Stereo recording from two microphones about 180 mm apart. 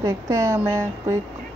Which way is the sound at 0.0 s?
15° right (ahead or behind).